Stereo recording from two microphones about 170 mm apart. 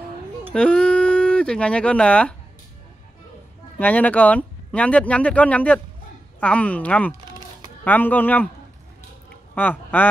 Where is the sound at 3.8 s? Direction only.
10° left (ahead or behind).